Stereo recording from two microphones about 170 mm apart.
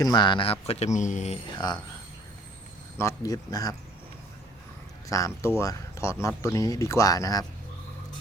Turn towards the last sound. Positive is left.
turn(degrees=20)  # may be behind; listen again after turning